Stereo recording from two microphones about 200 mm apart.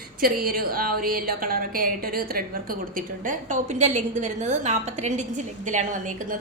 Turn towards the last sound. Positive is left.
turn(degrees=-40)  # may be behind; listen again after turning